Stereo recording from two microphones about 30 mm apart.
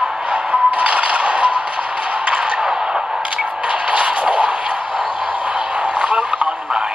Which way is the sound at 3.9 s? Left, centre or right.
Right.